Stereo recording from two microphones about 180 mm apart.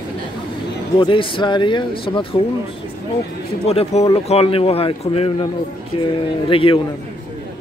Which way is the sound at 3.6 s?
35° left (ahead or behind).